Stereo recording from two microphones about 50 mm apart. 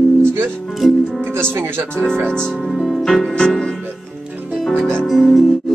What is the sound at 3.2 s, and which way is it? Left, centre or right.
Music, centre.